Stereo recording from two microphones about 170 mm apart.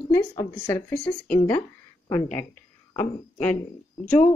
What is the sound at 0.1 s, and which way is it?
A woman's voice, 15° left (ahead or behind).